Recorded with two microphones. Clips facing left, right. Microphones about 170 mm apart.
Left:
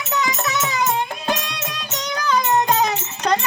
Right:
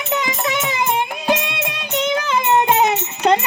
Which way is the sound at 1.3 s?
20° right (ahead or behind).